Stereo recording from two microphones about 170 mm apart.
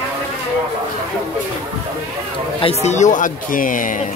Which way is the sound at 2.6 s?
35° left (ahead or behind).